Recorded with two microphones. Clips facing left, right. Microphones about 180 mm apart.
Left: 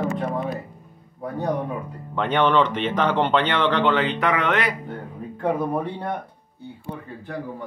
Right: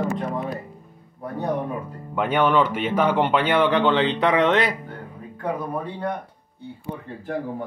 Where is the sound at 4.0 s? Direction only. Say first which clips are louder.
Right 3 dB; 25° right (ahead or behind).